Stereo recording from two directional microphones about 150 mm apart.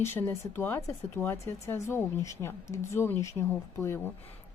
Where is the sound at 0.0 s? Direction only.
15° left (ahead or behind).